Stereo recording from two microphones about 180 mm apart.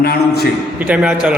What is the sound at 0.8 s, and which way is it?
Speech, 5° right (ahead or behind).